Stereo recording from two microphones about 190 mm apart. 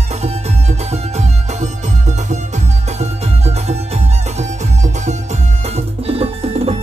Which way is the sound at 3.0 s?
35° right (ahead or behind).